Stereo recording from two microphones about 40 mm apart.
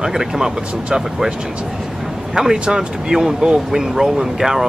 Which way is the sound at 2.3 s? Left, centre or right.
Centre.